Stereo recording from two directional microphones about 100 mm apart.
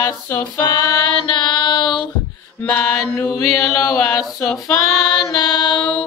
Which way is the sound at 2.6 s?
20° left (ahead or behind).